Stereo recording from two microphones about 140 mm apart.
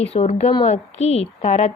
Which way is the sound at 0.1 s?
50° left (ahead or behind).